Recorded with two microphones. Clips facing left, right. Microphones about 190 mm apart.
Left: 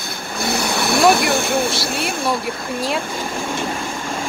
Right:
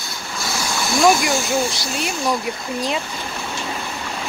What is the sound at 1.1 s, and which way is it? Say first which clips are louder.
Speech: even; 60° left (ahead or behind).